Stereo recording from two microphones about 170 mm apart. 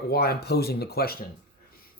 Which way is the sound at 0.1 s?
65° left (ahead or behind).